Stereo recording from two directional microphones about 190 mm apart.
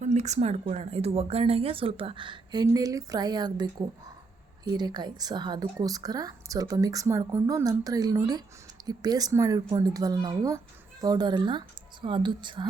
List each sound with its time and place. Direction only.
0.0 s a woman's voice: 35° right (ahead or behind)